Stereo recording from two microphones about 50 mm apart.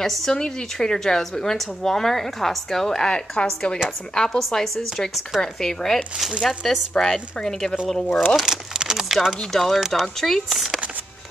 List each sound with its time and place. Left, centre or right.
0.0 s speech: centre
0.3 s a woman's voice: centre
4.4 s a woman's voice: centre
8.4 s speech: centre